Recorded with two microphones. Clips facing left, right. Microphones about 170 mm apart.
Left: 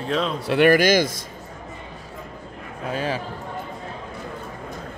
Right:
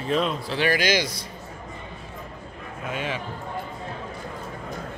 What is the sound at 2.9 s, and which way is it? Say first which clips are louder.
Speech: left 4 dB; 35° left (ahead or behind).